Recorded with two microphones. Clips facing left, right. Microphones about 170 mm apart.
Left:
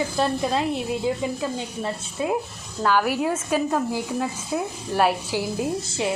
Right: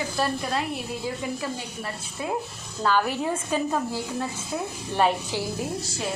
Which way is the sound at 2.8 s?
10° left (ahead or behind).